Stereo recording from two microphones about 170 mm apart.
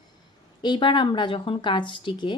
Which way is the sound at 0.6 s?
25° left (ahead or behind).